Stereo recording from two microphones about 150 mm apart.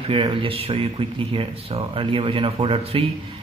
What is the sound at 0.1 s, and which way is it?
Speech, 35° right (ahead or behind).